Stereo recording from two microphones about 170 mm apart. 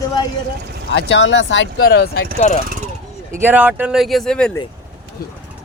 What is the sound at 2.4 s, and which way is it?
Speech, 45° left (ahead or behind).